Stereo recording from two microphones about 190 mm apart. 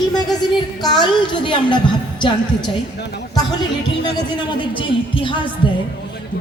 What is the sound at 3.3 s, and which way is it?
A woman's voice, 20° left (ahead or behind).